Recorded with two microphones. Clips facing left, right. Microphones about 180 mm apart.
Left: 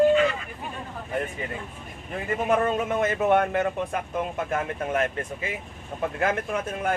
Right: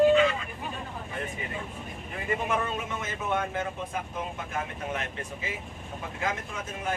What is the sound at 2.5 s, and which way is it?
Speech, 50° left (ahead or behind).